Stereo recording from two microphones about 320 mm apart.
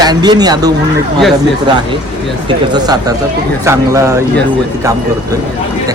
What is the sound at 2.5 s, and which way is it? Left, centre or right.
Speech, centre.